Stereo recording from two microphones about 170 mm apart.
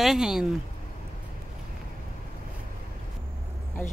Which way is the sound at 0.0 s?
5° right (ahead or behind).